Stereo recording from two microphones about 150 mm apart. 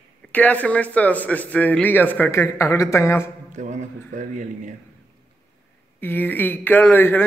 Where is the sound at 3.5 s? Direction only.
55° right (ahead or behind).